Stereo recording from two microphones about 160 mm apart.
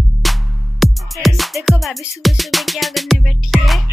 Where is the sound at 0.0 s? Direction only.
Centre (ahead or behind).